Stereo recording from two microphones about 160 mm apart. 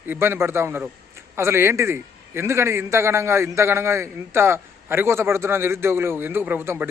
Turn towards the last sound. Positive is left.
turn(degrees=-15)  # may be behind; listen again after turning